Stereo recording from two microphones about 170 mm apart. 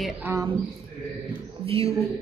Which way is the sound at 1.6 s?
35° right (ahead or behind).